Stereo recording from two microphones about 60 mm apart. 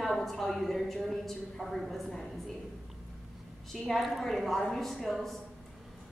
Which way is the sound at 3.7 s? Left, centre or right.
Centre.